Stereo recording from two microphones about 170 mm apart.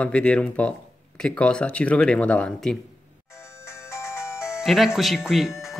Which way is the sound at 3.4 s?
15° left (ahead or behind).